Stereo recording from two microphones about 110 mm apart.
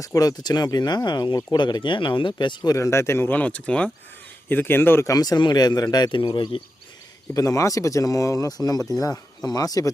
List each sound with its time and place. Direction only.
0.0 s speech: 35° left (ahead or behind)
2.7 s speech: 25° left (ahead or behind)
5.1 s speech: 35° left (ahead or behind)
7.3 s speech: 30° left (ahead or behind)